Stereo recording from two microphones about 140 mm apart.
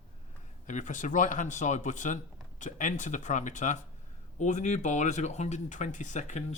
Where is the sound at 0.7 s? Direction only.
60° left (ahead or behind).